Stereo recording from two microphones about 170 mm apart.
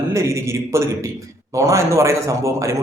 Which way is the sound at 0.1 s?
15° right (ahead or behind).